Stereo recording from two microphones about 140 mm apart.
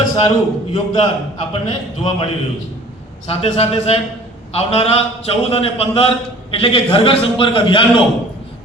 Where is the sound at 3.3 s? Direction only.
50° left (ahead or behind).